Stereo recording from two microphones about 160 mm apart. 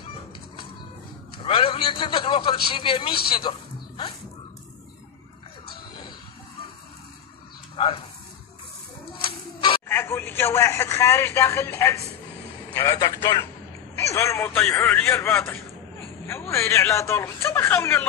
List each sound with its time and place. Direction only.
1.4 s a man's voice: 35° left (ahead or behind)
7.7 s a sound: 35° left (ahead or behind)
9.8 s speech: 15° left (ahead or behind)